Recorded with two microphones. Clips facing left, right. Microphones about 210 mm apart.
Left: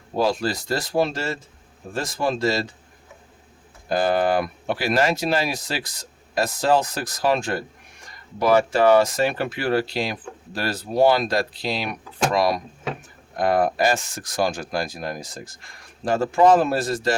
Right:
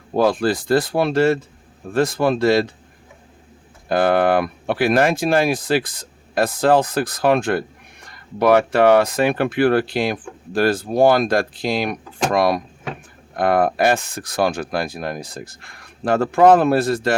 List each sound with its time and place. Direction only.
0.2 s speech: 55° right (ahead or behind)
3.8 s speech: 60° right (ahead or behind)